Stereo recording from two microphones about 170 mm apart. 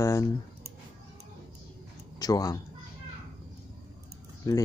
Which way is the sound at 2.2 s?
20° left (ahead or behind).